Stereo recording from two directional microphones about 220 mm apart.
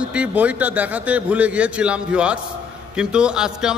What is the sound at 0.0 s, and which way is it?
A man's voice, 5° right (ahead or behind).